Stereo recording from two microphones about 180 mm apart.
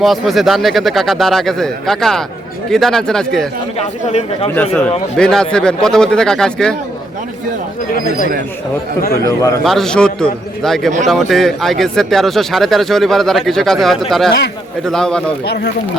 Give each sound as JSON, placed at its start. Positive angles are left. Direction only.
{"t": 0.0, "sound": "speech", "side_deg": 0}
{"t": 3.8, "sound": "speech", "side_deg": 35}
{"t": 4.4, "sound": "speech", "side_deg": 10}
{"t": 9.6, "sound": "speech", "side_deg": 5}
{"t": 15.4, "sound": "speech", "side_deg": 65}